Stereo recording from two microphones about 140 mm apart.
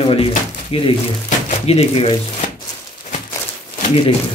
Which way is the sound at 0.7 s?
40° left (ahead or behind).